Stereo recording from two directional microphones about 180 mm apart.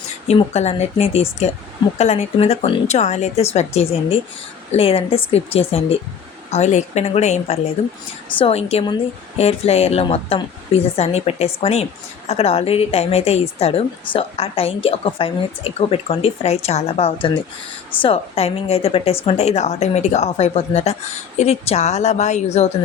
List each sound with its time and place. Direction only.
0.3 s a woman's voice: 35° left (ahead or behind)